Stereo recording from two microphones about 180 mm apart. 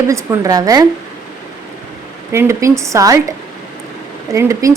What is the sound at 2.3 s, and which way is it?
A woman's voice, 15° right (ahead or behind).